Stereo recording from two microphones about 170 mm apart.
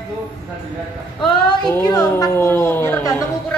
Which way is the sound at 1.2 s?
30° left (ahead or behind).